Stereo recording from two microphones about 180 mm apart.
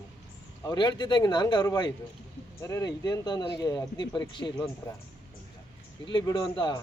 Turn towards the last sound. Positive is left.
turn(degrees=25)  # may be behind; listen again after turning